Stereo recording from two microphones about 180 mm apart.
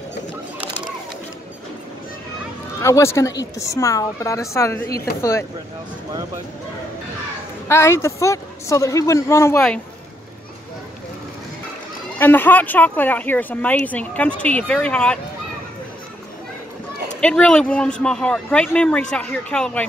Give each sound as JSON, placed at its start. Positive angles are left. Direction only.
{"t": 2.8, "sound": "speech", "side_deg": 15}
{"t": 7.6, "sound": "speech", "side_deg": 15}
{"t": 12.2, "sound": "speech", "side_deg": 10}
{"t": 17.2, "sound": "speech", "side_deg": 5}